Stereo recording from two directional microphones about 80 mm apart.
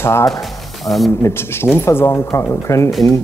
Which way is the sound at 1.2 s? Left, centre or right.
Left.